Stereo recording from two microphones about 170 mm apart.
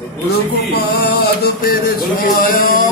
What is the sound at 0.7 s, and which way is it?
Male singing, 70° left (ahead or behind).